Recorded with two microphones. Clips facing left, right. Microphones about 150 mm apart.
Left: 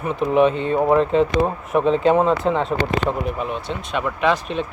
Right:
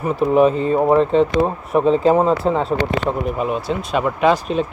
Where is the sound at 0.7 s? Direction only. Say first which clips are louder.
Right 2 dB; 10° right (ahead or behind).